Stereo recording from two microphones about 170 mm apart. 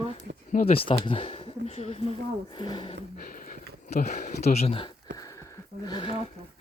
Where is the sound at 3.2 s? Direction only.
55° left (ahead or behind).